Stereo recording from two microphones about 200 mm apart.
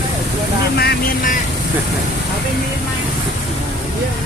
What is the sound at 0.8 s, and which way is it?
Speech, 45° left (ahead or behind).